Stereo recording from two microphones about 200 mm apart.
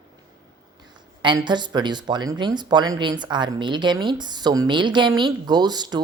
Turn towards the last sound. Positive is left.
turn(degrees=-20)  # may be behind; listen again after turning